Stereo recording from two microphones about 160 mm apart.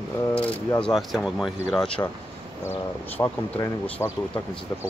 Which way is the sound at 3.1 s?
15° left (ahead or behind).